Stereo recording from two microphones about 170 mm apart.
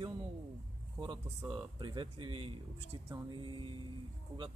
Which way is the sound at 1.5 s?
30° right (ahead or behind).